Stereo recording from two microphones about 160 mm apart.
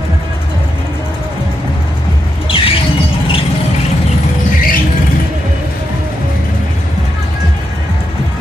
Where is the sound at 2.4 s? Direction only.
35° left (ahead or behind).